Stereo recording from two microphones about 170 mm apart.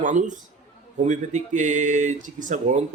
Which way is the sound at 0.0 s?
45° right (ahead or behind).